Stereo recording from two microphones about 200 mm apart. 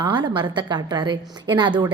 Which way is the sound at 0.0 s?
25° right (ahead or behind).